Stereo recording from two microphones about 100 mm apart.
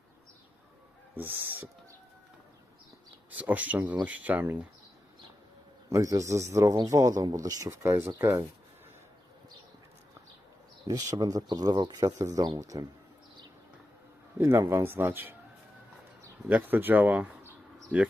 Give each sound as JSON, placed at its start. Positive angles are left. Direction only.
{"t": 1.1, "sound": "speech", "side_deg": -20}
{"t": 3.2, "sound": "speech", "side_deg": -15}
{"t": 5.9, "sound": "speech", "side_deg": -35}
{"t": 10.8, "sound": "speech", "side_deg": -40}
{"t": 14.4, "sound": "speech", "side_deg": -30}
{"t": 16.5, "sound": "speech", "side_deg": -15}